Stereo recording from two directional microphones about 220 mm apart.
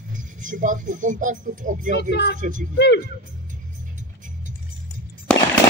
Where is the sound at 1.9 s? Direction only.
50° left (ahead or behind).